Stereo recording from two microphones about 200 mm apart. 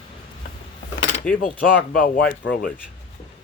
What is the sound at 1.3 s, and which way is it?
Speech, 5° left (ahead or behind).